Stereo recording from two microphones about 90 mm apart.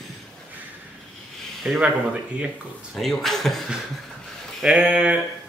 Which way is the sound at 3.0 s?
5° left (ahead or behind).